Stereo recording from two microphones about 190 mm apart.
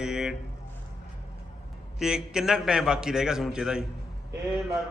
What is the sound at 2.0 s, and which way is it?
A man's voice, 5° right (ahead or behind).